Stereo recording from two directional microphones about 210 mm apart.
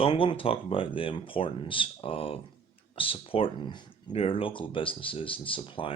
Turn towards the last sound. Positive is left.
turn(degrees=25)  # may be behind; listen again after turning